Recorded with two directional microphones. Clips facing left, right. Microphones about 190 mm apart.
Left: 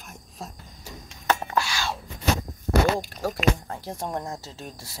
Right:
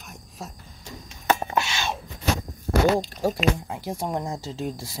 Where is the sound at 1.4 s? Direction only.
20° right (ahead or behind).